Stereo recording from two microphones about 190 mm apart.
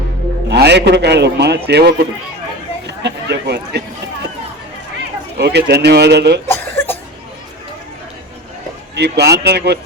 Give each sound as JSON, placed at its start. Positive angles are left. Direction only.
{"t": 0.5, "sound": "a man's voice", "side_deg": -65}
{"t": 2.8, "sound": "run", "side_deg": -60}
{"t": 5.4, "sound": "a man's voice", "side_deg": -60}
{"t": 6.5, "sound": "cough", "side_deg": 10}
{"t": 9.0, "sound": "a man's voice", "side_deg": -60}